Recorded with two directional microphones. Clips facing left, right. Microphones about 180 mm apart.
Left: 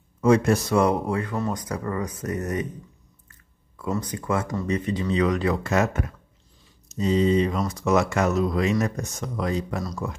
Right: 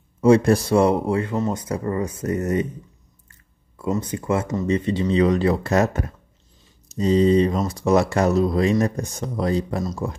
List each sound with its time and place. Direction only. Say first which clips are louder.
0.2 s speech: right 4 dB; 30° right (ahead or behind)